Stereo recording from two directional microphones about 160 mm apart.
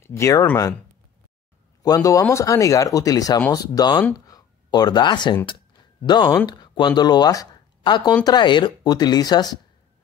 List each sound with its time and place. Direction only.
0.0 s speech: 20° left (ahead or behind)
1.8 s speech: 20° left (ahead or behind)